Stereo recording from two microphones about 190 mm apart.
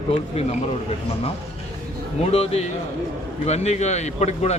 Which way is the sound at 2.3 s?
35° left (ahead or behind).